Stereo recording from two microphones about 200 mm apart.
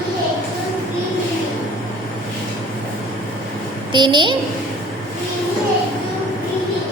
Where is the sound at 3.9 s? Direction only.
25° right (ahead or behind).